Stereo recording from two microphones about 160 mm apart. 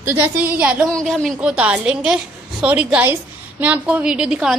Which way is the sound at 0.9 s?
5° left (ahead or behind).